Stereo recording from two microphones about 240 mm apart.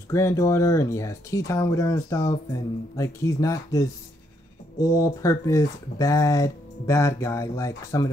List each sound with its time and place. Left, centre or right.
0.1 s speech: centre